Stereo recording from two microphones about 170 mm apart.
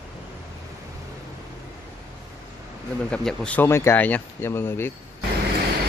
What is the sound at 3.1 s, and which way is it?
Speech, 5° left (ahead or behind).